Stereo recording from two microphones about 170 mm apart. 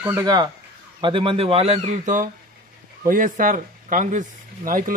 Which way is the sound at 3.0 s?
55° right (ahead or behind).